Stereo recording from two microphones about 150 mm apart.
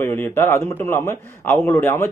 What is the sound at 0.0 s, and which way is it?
Speech, 15° left (ahead or behind).